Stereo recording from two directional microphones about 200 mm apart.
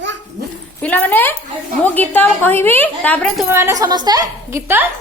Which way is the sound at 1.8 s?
10° left (ahead or behind).